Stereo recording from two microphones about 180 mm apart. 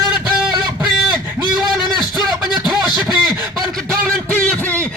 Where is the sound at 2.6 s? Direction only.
Centre (ahead or behind).